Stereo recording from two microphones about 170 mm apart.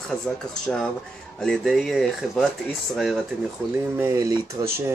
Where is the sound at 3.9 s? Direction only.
15° right (ahead or behind).